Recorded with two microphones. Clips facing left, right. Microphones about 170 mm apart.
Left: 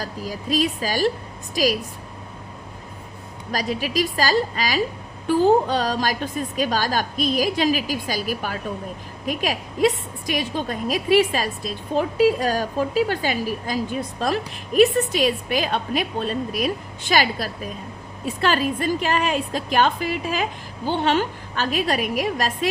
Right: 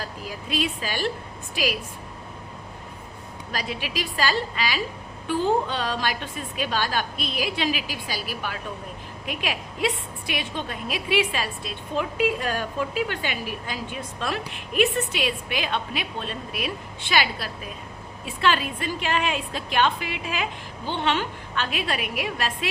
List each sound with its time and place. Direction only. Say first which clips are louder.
0.0 s a woman's voice: left 5 dB; 40° left (ahead or behind)
3.5 s a woman's voice: left 6 dB; 40° left (ahead or behind)